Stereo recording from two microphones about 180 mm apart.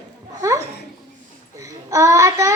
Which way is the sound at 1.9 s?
15° right (ahead or behind).